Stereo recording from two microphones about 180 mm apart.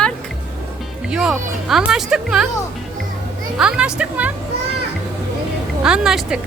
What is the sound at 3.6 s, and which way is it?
Speech, 5° right (ahead or behind).